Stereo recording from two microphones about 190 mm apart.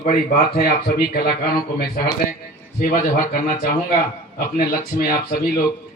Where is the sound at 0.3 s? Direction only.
55° left (ahead or behind).